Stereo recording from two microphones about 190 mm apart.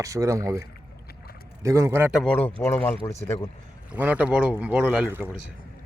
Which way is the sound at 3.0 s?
15° left (ahead or behind).